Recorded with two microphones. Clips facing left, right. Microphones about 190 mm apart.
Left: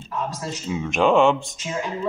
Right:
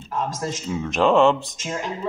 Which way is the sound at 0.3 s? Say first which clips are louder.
Right 3 dB; 90° right.